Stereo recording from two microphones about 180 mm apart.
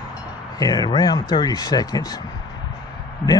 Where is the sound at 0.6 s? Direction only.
20° left (ahead or behind).